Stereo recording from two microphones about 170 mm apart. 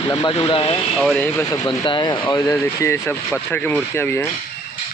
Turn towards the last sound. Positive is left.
turn(degrees=10)  # may be behind; listen again after turning